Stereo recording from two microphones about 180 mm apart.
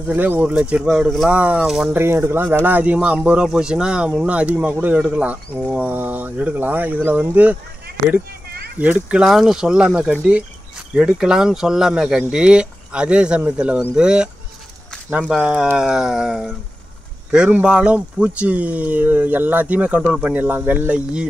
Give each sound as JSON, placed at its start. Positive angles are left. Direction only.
{"t": 0.0, "sound": "speech", "side_deg": -10}
{"t": 8.7, "sound": "speech", "side_deg": -10}